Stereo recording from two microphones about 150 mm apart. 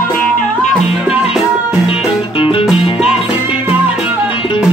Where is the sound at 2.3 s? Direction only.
35° left (ahead or behind).